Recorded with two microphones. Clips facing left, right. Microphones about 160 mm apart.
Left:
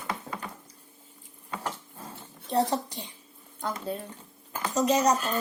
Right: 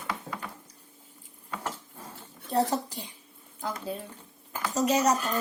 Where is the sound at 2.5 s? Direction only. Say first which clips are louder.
Even; 5° right (ahead or behind).